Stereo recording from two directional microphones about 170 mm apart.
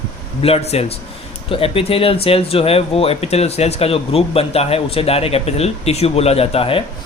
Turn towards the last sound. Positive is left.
turn(degrees=35)  # may be behind; listen again after turning